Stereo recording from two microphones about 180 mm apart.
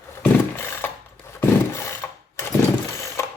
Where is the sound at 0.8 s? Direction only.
10° left (ahead or behind).